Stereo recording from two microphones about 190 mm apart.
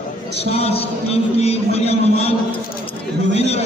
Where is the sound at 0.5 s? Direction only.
30° left (ahead or behind).